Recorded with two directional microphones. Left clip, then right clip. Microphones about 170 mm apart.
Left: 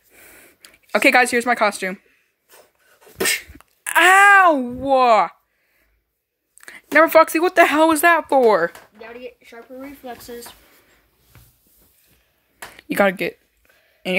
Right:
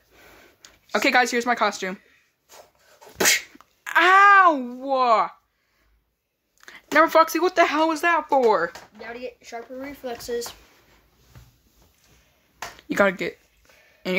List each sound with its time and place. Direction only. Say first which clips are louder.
0.1 s a sound: left 3 dB; 15° left (ahead or behind)
2.5 s dog: right 2 dB; 15° right (ahead or behind)
3.5 s a sound: left 3 dB; 25° left (ahead or behind)
6.6 s speech: left 4 dB; 20° left (ahead or behind)
9.0 s speech: right 1 dB; 25° right (ahead or behind)
12.7 s speech: left 3 dB; 15° left (ahead or behind)